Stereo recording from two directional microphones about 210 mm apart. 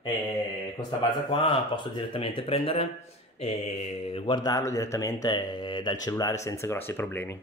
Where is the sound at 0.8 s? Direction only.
25° left (ahead or behind).